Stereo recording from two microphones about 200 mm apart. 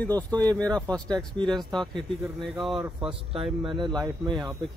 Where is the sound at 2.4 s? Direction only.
Centre (ahead or behind).